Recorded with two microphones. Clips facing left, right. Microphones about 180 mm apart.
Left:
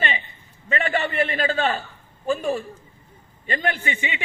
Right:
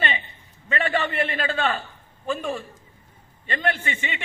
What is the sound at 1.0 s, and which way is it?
A man's voice, 40° left (ahead or behind).